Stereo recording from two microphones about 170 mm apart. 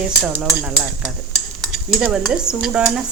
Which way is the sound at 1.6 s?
5° right (ahead or behind).